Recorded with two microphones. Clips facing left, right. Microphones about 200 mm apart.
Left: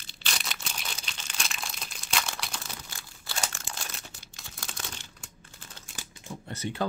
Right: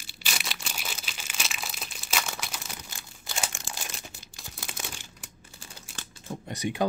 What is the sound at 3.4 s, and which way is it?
Crumpling, 15° right (ahead or behind).